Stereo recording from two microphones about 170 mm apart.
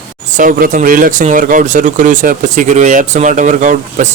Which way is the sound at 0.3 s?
50° right (ahead or behind).